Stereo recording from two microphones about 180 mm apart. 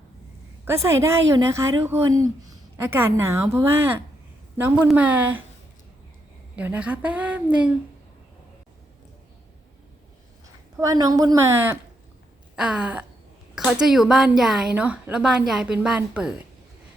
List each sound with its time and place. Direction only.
0.6 s a woman's voice: 15° right (ahead or behind)
6.6 s a woman's voice: 10° right (ahead or behind)
10.8 s a woman's voice: 20° right (ahead or behind)